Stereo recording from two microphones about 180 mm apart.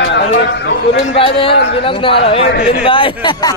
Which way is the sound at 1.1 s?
30° left (ahead or behind).